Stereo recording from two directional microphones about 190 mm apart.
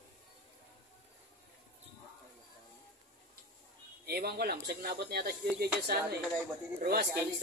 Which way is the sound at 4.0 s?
55° right (ahead or behind).